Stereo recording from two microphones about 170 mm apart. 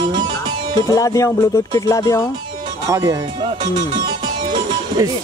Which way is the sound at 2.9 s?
20° right (ahead or behind).